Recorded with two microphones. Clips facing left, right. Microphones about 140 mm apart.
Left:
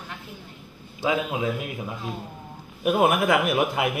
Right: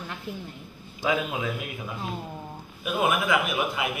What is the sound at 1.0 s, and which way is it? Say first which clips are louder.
Speech: left 2 dB; 30° left (ahead or behind).